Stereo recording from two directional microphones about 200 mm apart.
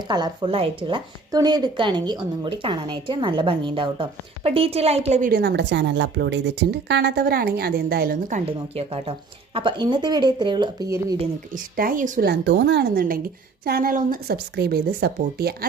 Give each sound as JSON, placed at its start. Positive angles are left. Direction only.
{"t": 0.1, "sound": "speech", "side_deg": -25}
{"t": 5.4, "sound": "a woman's voice", "side_deg": -55}
{"t": 8.7, "sound": "speech", "side_deg": -30}
{"t": 11.5, "sound": "a woman's voice", "side_deg": -45}